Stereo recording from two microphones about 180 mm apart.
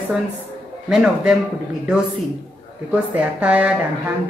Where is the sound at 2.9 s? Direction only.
10° right (ahead or behind).